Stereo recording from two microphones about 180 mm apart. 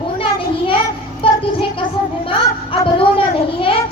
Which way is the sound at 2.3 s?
30° left (ahead or behind).